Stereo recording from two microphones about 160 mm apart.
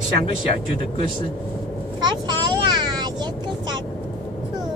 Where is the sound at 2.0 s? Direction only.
25° right (ahead or behind).